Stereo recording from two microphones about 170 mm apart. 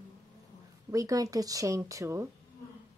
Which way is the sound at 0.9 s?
20° right (ahead or behind).